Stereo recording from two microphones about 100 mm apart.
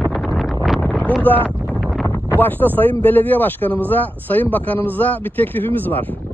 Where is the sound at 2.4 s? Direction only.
20° left (ahead or behind).